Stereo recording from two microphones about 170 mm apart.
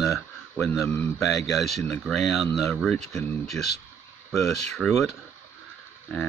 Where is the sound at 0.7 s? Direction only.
10° left (ahead or behind).